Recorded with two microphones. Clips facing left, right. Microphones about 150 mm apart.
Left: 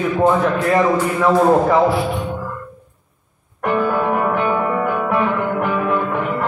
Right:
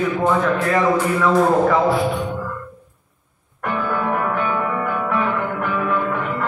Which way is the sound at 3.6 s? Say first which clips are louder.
Left 5 dB; 30° left (ahead or behind).